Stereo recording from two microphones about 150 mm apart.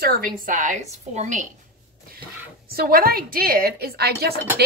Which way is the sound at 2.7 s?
80° right.